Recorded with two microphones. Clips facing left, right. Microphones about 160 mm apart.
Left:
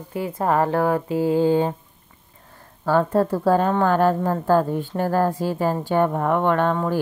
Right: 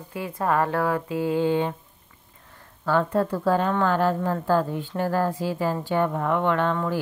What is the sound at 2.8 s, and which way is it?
A woman's voice, 40° left (ahead or behind).